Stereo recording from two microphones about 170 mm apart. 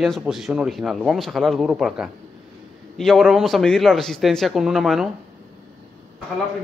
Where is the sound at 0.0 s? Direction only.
Centre (ahead or behind).